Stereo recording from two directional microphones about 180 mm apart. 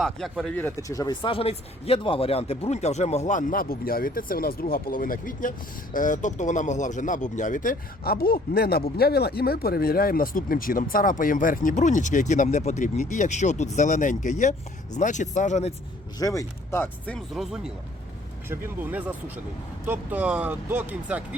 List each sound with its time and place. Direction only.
0.0 s speech: centre (ahead or behind); by 15.7 s 40° left (ahead or behind)
16.1 s speech: 20° left (ahead or behind); by 17.7 s centre (ahead or behind)
18.4 s speech: 10° right (ahead or behind)